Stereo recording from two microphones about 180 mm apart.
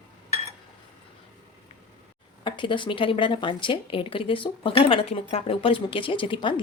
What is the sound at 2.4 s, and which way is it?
Speech, 25° left (ahead or behind).